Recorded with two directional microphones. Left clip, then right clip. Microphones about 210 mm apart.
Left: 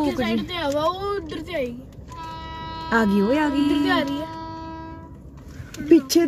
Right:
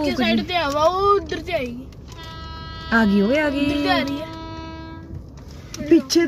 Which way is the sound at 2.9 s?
20° left (ahead or behind).